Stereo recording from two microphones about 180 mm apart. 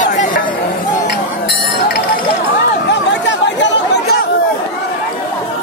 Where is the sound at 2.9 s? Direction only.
90° left.